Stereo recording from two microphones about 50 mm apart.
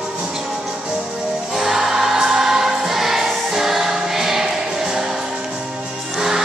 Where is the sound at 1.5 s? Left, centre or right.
Centre.